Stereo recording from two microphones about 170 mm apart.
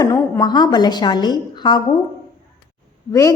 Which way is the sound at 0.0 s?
25° left (ahead or behind).